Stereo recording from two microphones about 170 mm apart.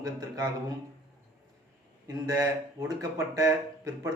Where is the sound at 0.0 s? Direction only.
20° right (ahead or behind).